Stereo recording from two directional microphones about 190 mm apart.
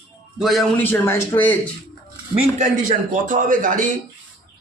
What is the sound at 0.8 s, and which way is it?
Speech, 10° left (ahead or behind).